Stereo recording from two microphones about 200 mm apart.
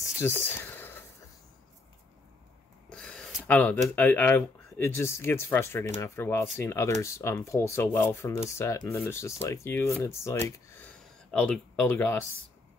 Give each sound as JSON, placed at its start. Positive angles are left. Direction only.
{"t": 0.0, "sound": "a sound", "side_deg": 10}
{"t": 2.9, "sound": "speech", "side_deg": 5}
{"t": 11.3, "sound": "speech", "side_deg": 5}